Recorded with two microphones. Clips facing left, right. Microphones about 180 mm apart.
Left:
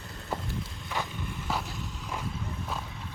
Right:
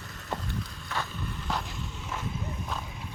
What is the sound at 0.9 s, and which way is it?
Vehicle, 15° left (ahead or behind).